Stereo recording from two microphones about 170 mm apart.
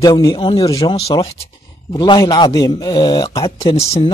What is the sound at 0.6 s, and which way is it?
Speech, 20° left (ahead or behind).